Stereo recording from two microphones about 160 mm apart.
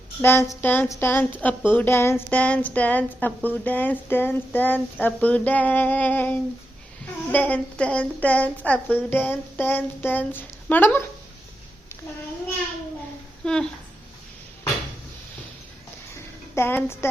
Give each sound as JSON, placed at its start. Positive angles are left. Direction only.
{"t": 0.2, "sound": "speech", "side_deg": 15}
{"t": 13.4, "sound": "speech", "side_deg": 5}
{"t": 16.1, "sound": "a sound", "side_deg": 15}